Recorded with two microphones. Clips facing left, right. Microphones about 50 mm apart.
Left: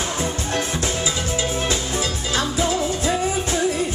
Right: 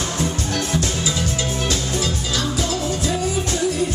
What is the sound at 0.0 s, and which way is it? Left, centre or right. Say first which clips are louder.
Music: right 1 dB; centre.